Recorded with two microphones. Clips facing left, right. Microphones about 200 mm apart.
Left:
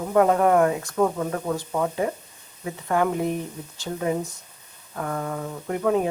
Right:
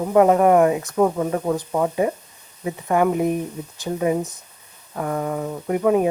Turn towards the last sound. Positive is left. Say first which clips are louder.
# right 4 dB
turn(degrees=-15)  # may be behind; listen again after turning